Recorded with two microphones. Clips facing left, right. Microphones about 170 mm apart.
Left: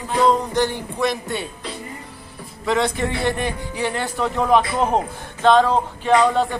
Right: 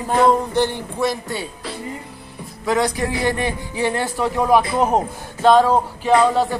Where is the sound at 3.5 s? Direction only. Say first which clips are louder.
Right 3 dB; 15° right (ahead or behind).